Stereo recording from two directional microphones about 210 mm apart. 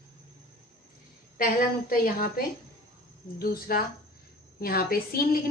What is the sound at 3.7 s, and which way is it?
A woman's voice, 45° left (ahead or behind).